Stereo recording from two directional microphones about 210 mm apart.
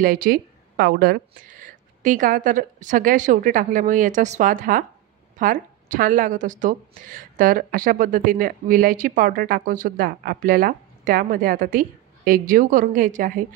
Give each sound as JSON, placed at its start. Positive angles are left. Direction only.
{"t": 0.0, "sound": "a woman's voice", "side_deg": -40}